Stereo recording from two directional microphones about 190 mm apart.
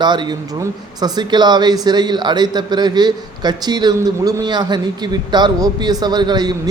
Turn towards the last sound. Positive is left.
turn(degrees=-20)  # may be behind; listen again after turning